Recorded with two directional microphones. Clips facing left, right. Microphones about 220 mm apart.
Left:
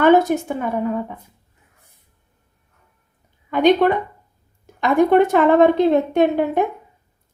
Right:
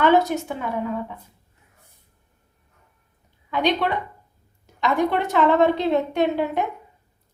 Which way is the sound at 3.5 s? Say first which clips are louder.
Left 8 dB; 50° left (ahead or behind).